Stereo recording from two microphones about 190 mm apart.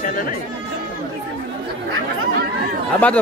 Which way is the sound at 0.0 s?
50° left (ahead or behind).